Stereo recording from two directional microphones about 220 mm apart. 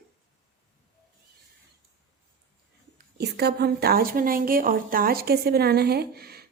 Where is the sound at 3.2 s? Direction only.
45° right (ahead or behind).